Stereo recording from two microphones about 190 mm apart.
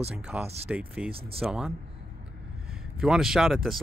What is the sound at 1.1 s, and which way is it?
Speech, 30° right (ahead or behind).